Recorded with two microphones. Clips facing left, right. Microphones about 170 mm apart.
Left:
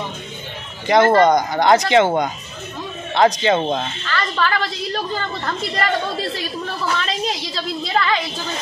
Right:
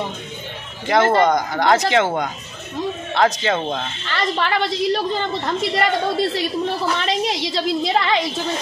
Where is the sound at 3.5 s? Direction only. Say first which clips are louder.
Left 4 dB; 15° left (ahead or behind).